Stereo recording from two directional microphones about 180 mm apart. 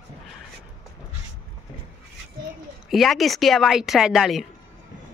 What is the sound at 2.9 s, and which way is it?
A woman's voice, centre (ahead or behind).